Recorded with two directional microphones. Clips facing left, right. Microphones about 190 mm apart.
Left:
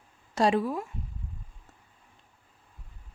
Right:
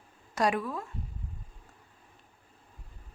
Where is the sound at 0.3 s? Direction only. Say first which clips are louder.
Left 4 dB; 25° left (ahead or behind).